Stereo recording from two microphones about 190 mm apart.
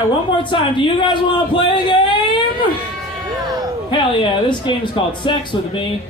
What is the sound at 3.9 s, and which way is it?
A man's voice, 25° left (ahead or behind).